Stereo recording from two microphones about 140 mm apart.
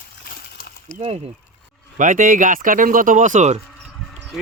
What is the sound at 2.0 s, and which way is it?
Speech, 70° right (ahead or behind).